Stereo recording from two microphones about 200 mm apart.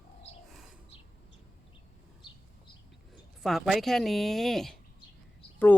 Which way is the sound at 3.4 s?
Centre (ahead or behind).